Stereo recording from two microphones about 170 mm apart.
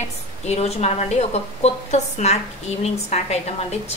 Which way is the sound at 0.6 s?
40° left (ahead or behind).